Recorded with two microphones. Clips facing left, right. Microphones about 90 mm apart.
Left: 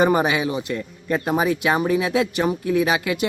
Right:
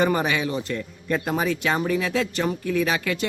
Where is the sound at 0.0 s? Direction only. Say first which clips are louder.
Left 4 dB; 20° left (ahead or behind).